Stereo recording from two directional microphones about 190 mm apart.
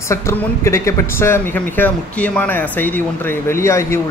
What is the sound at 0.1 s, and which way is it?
Speech, 15° left (ahead or behind).